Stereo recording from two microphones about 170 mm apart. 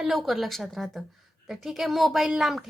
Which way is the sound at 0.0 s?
Centre (ahead or behind).